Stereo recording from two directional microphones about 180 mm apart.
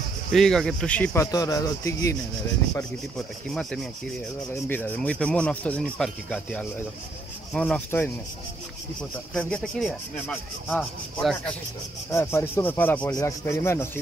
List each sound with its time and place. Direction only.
0.3 s speech: centre (ahead or behind); by 2.1 s 15° left (ahead or behind)
3.4 s speech: 5° left (ahead or behind)
9.3 s speech: 5° left (ahead or behind)
12.1 s speech: 15° left (ahead or behind)